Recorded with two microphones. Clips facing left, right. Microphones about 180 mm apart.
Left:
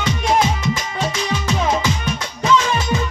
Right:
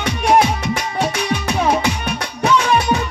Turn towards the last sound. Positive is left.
turn(degrees=-65)  # may be behind; listen again after turning